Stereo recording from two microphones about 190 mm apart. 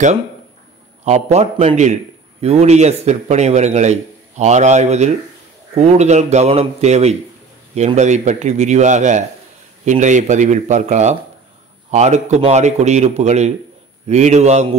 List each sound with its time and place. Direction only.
1.0 s a man's voice: 35° right (ahead or behind)